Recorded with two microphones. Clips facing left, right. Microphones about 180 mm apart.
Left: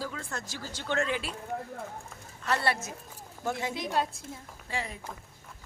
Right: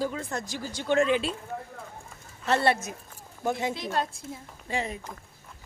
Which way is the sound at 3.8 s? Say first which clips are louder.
Even; 10° left (ahead or behind).